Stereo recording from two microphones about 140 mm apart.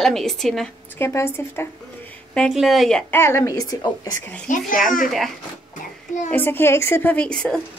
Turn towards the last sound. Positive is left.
turn(degrees=5)  # may be behind; listen again after turning